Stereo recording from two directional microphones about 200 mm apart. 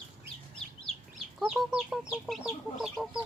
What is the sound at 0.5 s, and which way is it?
Chicken, centre (ahead or behind).